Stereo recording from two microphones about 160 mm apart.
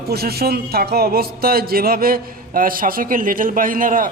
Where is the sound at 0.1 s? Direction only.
75° right (ahead or behind).